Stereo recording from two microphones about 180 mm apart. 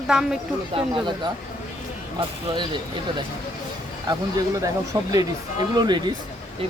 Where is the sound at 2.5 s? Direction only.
25° right (ahead or behind).